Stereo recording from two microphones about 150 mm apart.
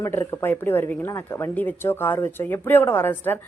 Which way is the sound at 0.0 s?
15° left (ahead or behind).